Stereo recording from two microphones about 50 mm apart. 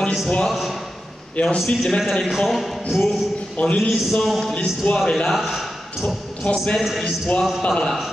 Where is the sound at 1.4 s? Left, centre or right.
Centre.